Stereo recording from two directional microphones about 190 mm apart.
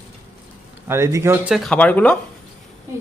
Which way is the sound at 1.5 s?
Centre (ahead or behind).